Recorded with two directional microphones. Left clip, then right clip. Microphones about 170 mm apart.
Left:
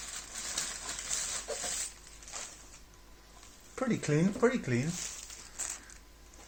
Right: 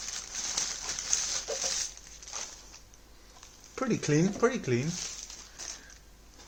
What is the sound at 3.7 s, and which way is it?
Speech, 40° right (ahead or behind).